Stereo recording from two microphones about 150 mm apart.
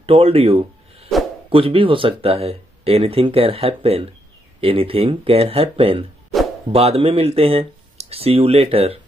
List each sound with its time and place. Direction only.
0.0 s speech: 40° right (ahead or behind)